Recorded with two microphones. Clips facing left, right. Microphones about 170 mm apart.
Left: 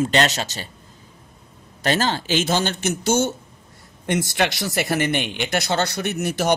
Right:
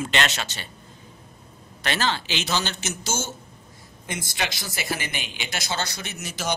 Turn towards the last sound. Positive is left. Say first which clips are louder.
# left 9 dB
turn(degrees=60)  # may be behind; listen again after turning